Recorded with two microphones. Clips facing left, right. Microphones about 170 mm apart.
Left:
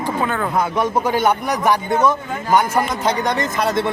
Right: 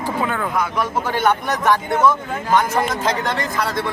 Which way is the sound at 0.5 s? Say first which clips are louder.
Left 3 dB; 30° left (ahead or behind).